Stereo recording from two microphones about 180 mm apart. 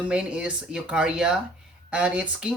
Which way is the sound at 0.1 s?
5° right (ahead or behind).